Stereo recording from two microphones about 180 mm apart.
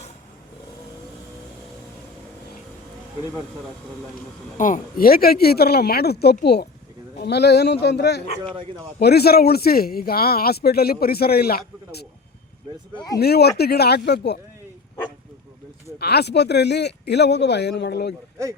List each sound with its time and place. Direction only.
4.5 s speech: 45° left (ahead or behind)
13.1 s speech: 65° left (ahead or behind)
16.0 s speech: 65° left (ahead or behind)